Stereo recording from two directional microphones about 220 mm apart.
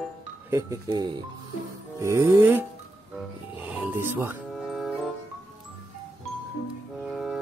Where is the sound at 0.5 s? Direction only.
15° right (ahead or behind).